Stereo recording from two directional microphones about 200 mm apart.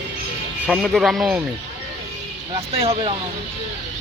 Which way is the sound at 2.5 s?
30° right (ahead or behind).